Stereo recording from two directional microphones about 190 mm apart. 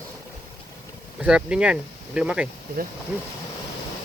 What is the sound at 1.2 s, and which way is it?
Speech, 5° right (ahead or behind).